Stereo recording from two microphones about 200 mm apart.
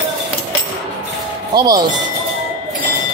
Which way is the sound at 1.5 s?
20° right (ahead or behind).